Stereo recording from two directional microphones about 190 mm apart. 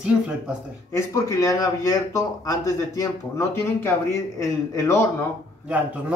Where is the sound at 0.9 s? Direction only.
15° left (ahead or behind).